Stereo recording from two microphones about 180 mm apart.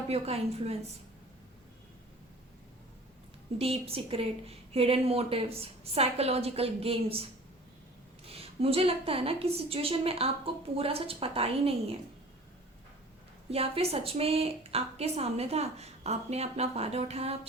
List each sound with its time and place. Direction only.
0.1 s a woman's voice: 35° right (ahead or behind)
3.6 s a woman's voice: 30° right (ahead or behind)
13.5 s a woman's voice: 35° right (ahead or behind)